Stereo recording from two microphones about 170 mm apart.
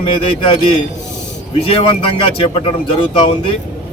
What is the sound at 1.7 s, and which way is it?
Speech, 35° left (ahead or behind).